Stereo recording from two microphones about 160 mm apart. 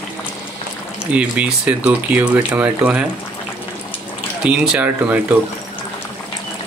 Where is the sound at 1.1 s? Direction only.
10° right (ahead or behind).